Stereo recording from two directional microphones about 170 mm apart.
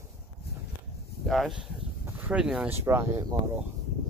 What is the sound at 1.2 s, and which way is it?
Speech, centre (ahead or behind).